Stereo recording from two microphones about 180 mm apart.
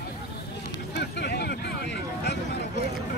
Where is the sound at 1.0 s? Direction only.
65° left (ahead or behind).